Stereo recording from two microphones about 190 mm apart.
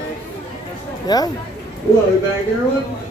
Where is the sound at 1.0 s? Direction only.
20° left (ahead or behind).